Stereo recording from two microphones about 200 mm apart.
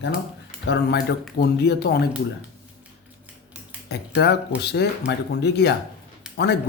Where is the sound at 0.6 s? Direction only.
55° left (ahead or behind).